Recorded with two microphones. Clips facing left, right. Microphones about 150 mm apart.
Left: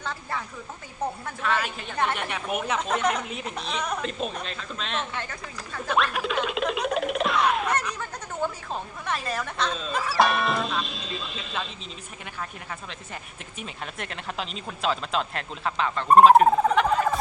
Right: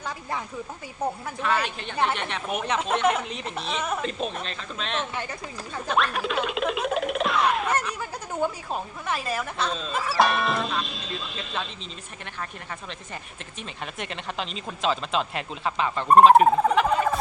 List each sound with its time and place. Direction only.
0.0 s a sound: 15° right (ahead or behind)
1.0 s speech: 10° right (ahead or behind)
5.1 s speech: 15° right (ahead or behind)
6.0 s a sound: centre (ahead or behind)
9.0 s speech: 5° right (ahead or behind)
13.6 s speech: centre (ahead or behind)